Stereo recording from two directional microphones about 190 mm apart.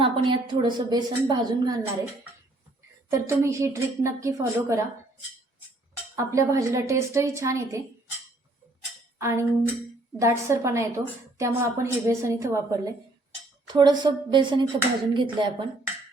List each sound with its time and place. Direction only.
0.0 s a woman's voice: 25° right (ahead or behind)
3.1 s a woman's voice: 15° right (ahead or behind)
6.1 s a woman's voice: 15° right (ahead or behind)
9.1 s a woman's voice: 15° right (ahead or behind)